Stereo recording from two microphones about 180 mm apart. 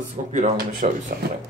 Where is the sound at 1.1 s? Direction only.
60° right (ahead or behind).